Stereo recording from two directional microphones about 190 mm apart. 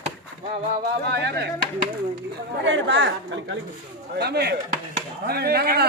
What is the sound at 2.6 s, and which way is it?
Speech, 70° right (ahead or behind).